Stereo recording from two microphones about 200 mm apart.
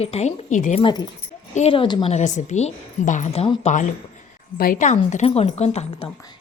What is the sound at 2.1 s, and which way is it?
A woman's voice, 35° left (ahead or behind).